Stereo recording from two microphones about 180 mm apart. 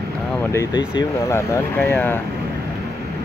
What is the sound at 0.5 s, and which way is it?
Speech, 20° left (ahead or behind).